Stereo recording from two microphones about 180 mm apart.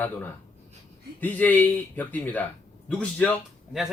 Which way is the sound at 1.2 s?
10° left (ahead or behind).